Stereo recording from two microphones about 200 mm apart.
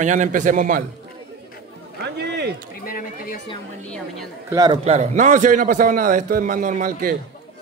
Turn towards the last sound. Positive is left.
turn(degrees=-45)  # may be behind; listen again after turning